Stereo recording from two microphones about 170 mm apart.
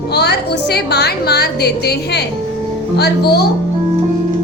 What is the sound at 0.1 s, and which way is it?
A woman's voice, 75° left (ahead or behind).